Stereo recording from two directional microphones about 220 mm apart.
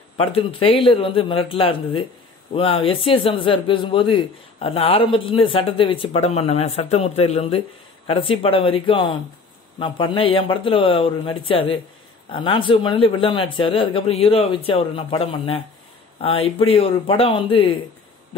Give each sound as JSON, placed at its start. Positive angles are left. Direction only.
{"t": 0.2, "sound": "speech", "side_deg": 25}